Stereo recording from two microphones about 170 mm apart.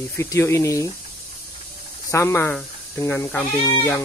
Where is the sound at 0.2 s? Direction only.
15° left (ahead or behind).